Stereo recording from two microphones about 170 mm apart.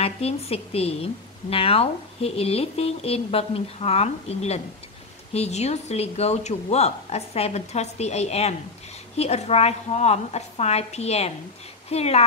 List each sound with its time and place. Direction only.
0.0 s a woman's voice: 35° left (ahead or behind)